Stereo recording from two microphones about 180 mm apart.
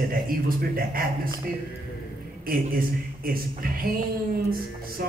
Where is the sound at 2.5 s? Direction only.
55° right (ahead or behind).